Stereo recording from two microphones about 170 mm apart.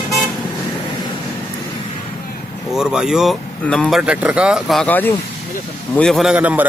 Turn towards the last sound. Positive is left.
turn(degrees=-10)  # may be behind; listen again after turning